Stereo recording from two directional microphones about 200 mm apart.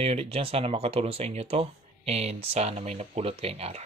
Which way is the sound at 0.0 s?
30° right (ahead or behind).